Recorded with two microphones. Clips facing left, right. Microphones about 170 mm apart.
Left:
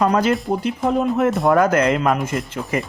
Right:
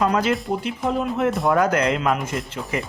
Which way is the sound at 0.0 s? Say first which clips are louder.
Left 3 dB; 40° left (ahead or behind).